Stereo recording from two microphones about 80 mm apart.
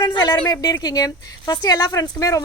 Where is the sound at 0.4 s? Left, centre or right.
Left.